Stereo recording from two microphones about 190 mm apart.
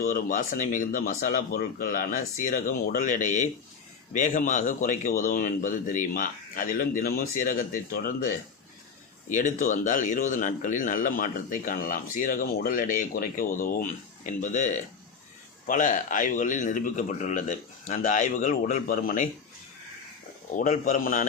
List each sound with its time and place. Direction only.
0.0 s speech: 45° left (ahead or behind)
9.3 s speech: 40° left (ahead or behind)
20.5 s speech: 45° left (ahead or behind)